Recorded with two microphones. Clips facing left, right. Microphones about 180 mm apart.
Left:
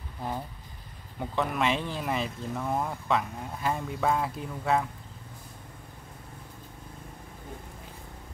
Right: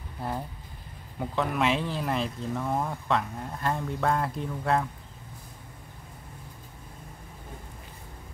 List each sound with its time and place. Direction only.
1.2 s speech: centre (ahead or behind)